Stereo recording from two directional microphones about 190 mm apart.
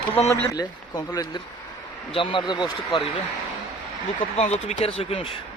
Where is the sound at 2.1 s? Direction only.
25° left (ahead or behind).